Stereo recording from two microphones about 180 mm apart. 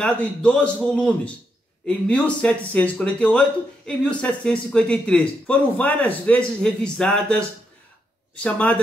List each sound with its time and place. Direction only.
0.0 s speech: 5° left (ahead or behind)